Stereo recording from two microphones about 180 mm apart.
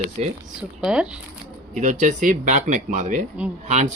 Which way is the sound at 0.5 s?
5° right (ahead or behind).